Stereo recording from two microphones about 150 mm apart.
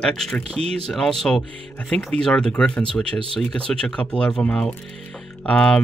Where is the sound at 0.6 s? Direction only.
40° right (ahead or behind).